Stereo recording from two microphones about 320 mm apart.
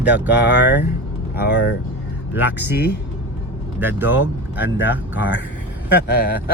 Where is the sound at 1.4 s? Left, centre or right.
Left.